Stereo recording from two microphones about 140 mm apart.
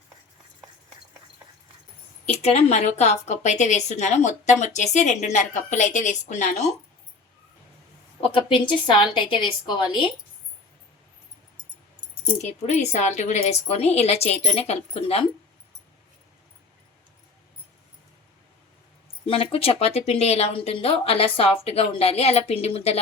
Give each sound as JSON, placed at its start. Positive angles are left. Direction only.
{"t": 2.2, "sound": "a woman's voice", "side_deg": 50}
{"t": 8.2, "sound": "a woman's voice", "side_deg": 40}
{"t": 12.2, "sound": "speech", "side_deg": 55}
{"t": 19.2, "sound": "speech", "side_deg": 45}